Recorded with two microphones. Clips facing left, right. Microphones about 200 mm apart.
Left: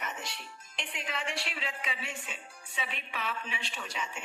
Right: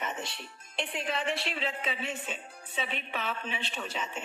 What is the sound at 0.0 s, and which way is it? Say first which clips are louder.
Music: right 4 dB; 25° right (ahead or behind).